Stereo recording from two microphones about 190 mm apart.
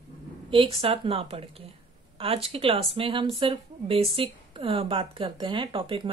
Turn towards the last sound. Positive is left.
turn(degrees=-30)  # may be behind; listen again after turning